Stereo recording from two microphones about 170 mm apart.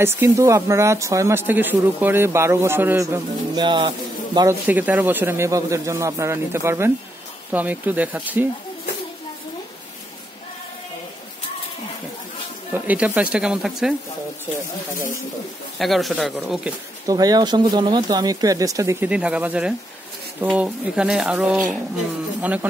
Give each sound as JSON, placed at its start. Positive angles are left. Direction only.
{"t": 0.0, "sound": "speech", "side_deg": -15}
{"t": 3.5, "sound": "speech", "side_deg": -25}
{"t": 4.6, "sound": "speech", "side_deg": -10}
{"t": 12.8, "sound": "speech", "side_deg": -10}
{"t": 15.8, "sound": "speech", "side_deg": 0}
{"t": 17.1, "sound": "speech", "side_deg": -20}